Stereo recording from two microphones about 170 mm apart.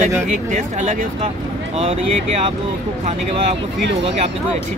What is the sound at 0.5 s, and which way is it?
Speech, 45° right (ahead or behind).